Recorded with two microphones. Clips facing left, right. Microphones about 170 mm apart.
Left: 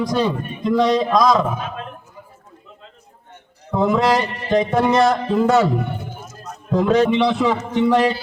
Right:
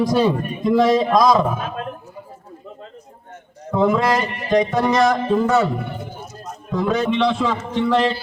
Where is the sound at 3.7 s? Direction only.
20° left (ahead or behind).